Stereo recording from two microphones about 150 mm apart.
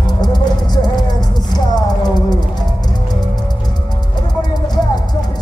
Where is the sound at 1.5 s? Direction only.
25° left (ahead or behind).